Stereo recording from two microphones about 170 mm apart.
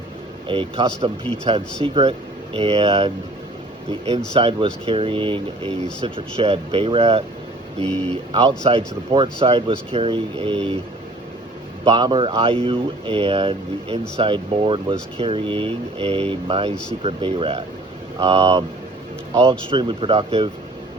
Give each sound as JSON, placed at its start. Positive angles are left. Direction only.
{"t": 0.4, "sound": "speech", "side_deg": -30}
{"t": 4.4, "sound": "speech", "side_deg": -35}
{"t": 11.9, "sound": "speech", "side_deg": -25}